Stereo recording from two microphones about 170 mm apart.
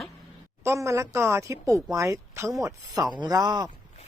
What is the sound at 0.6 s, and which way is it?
Speech, 15° right (ahead or behind).